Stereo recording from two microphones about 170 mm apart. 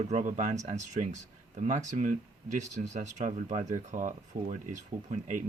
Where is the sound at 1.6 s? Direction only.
45° right (ahead or behind).